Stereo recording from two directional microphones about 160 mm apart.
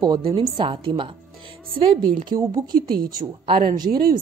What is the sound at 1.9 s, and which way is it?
A woman's voice, 60° right (ahead or behind).